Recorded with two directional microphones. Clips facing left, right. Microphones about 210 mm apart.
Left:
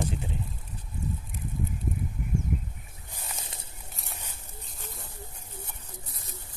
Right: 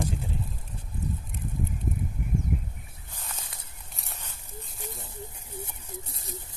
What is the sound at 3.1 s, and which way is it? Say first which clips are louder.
Snake: left 1 dB; 10° left (ahead or behind).